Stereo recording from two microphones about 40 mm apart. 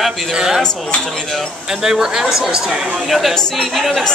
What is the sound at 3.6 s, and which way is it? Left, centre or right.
Speech, centre.